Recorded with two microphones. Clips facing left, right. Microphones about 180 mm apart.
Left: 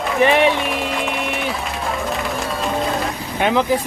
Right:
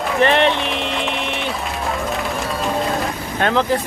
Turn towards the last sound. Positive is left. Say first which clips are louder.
# left 1 dB
turn(degrees=15)  # may be behind; listen again after turning